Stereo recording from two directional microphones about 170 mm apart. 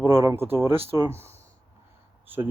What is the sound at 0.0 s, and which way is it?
Speech, 15° right (ahead or behind).